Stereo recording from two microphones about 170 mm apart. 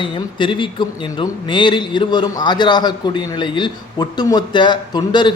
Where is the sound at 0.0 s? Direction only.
30° left (ahead or behind).